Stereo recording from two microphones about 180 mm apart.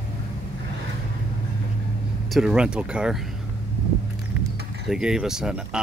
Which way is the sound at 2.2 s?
Centre (ahead or behind).